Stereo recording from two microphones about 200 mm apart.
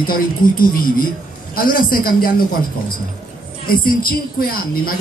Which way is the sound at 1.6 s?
45° left (ahead or behind).